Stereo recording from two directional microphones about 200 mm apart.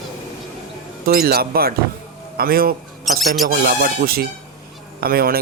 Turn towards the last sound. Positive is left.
turn(degrees=-50)  # may be behind; listen again after turning